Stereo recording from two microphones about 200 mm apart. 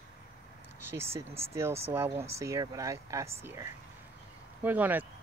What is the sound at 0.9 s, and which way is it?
Speech, 10° right (ahead or behind).